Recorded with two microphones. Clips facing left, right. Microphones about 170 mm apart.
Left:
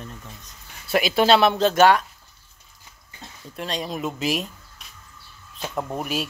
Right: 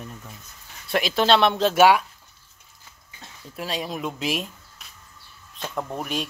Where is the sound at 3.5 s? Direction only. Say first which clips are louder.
Left 1 dB; 5° right (ahead or behind).